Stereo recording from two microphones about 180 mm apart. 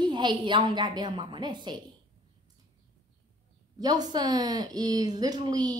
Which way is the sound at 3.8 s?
20° right (ahead or behind).